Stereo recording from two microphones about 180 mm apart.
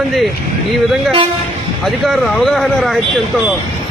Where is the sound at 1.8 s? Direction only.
Centre (ahead or behind).